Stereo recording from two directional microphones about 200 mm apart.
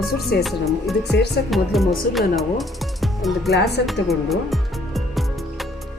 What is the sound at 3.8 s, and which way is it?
Music, centre (ahead or behind).